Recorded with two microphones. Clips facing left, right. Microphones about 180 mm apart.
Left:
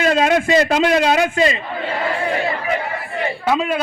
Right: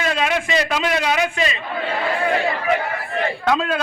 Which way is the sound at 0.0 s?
35° left (ahead or behind).